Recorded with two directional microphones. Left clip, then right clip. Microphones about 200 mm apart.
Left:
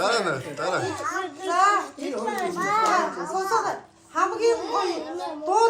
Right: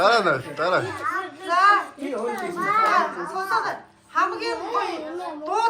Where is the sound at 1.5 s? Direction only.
35° left (ahead or behind).